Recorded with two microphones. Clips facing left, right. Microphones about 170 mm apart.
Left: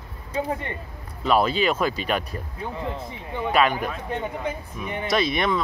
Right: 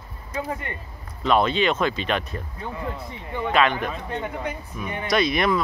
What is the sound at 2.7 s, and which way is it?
Speech, 25° left (ahead or behind).